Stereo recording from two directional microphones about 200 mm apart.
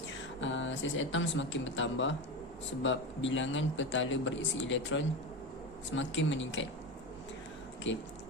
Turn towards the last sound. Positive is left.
turn(degrees=70)  # may be behind; listen again after turning